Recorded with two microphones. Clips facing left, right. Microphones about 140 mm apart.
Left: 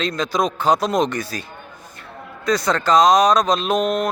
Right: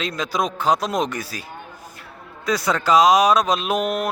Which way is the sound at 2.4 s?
5° right (ahead or behind).